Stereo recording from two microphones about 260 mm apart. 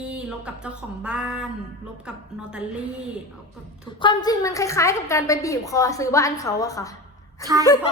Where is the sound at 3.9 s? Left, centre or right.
Centre.